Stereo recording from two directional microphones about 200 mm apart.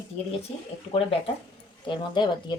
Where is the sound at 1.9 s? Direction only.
20° left (ahead or behind).